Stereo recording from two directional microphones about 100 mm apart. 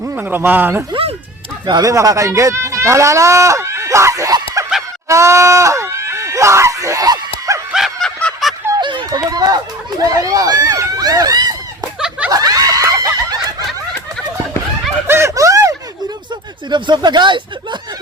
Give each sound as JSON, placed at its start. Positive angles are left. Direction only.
{"t": 0.0, "sound": "speech", "side_deg": -20}
{"t": 1.6, "sound": "speech", "side_deg": -45}
{"t": 1.9, "sound": "speech", "side_deg": -35}
{"t": 4.6, "sound": "a sound", "side_deg": -30}
{"t": 5.0, "sound": "screaming", "side_deg": -30}
{"t": 8.0, "sound": "fowl", "side_deg": 0}
{"t": 8.8, "sound": "a sound", "side_deg": -50}
{"t": 9.1, "sound": "run", "side_deg": -40}
{"t": 11.9, "sound": "a sound", "side_deg": -5}
{"t": 12.3, "sound": "snicker", "side_deg": -40}
{"t": 15.0, "sound": "a sound", "side_deg": -25}
{"t": 16.6, "sound": "speech", "side_deg": -50}